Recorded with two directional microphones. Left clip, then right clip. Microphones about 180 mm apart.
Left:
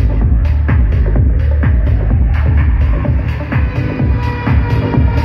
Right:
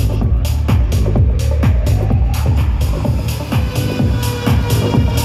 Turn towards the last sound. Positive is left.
turn(degrees=-25)  # may be behind; listen again after turning